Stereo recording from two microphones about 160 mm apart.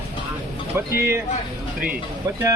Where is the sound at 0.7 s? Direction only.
15° right (ahead or behind).